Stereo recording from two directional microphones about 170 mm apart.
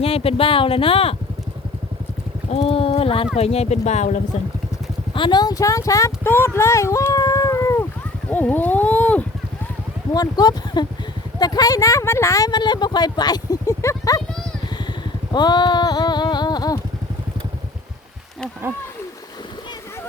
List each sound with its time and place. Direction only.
0.0 s speech: 35° left (ahead or behind)
2.5 s speech: 35° left (ahead or behind)
5.1 s speech: 25° left (ahead or behind)
8.3 s a sound: 10° left (ahead or behind)
10.2 s speech: 25° left (ahead or behind)
15.3 s clip-clop: 25° left (ahead or behind)